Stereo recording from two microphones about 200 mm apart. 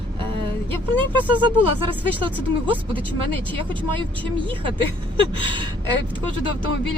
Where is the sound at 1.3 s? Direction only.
25° right (ahead or behind).